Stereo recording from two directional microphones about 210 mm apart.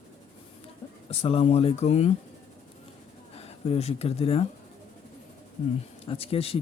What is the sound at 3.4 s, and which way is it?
Speech, 30° left (ahead or behind).